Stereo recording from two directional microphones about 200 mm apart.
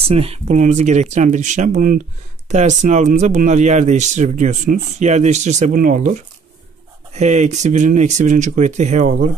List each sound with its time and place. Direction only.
0.0 s speech: 30° right (ahead or behind)
7.2 s speech: 35° right (ahead or behind)